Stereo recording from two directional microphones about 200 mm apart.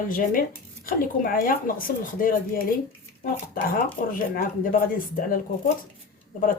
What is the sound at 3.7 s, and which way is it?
Speech, 45° left (ahead or behind).